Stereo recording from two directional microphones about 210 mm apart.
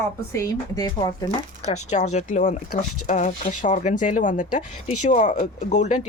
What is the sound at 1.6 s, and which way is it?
Speech, 35° left (ahead or behind).